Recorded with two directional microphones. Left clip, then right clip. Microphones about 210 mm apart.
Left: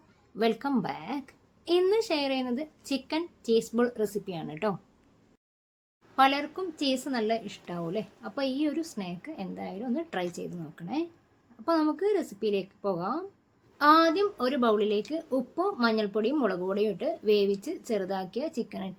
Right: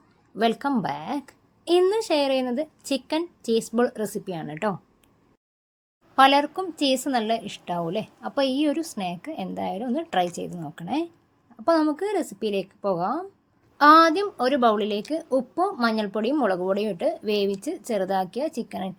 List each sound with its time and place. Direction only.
0.3 s a woman's voice: 35° right (ahead or behind)
6.1 s a woman's voice: 40° right (ahead or behind)